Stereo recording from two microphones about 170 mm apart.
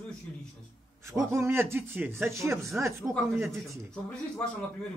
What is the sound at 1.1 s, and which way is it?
Speech, 15° right (ahead or behind).